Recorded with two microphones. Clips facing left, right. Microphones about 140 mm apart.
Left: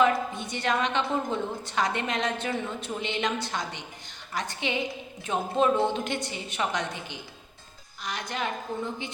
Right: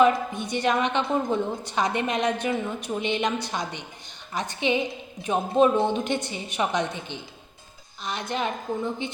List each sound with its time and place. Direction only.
0.0 s a woman's voice: 20° right (ahead or behind)